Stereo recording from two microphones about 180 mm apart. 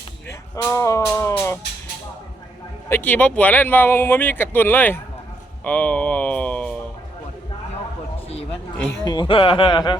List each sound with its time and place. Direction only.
0.3 s speech: 15° left (ahead or behind)
2.9 s speech: 10° left (ahead or behind)
9.0 s speech: 25° left (ahead or behind)